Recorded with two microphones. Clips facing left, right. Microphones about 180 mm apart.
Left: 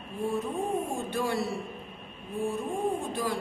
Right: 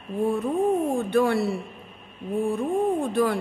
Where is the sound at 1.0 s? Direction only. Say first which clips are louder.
Right 8 dB; 60° right (ahead or behind).